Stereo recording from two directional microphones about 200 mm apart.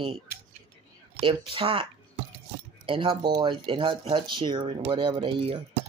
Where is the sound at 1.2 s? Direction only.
25° right (ahead or behind).